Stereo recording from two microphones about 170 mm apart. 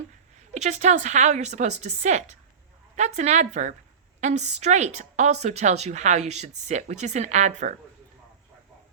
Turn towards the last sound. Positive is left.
turn(degrees=-45)  # may be behind; listen again after turning